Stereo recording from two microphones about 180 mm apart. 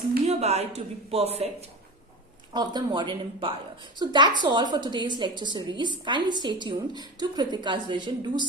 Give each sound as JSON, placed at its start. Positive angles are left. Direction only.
{"t": 0.3, "sound": "speech", "side_deg": -35}
{"t": 2.5, "sound": "a woman's voice", "side_deg": -25}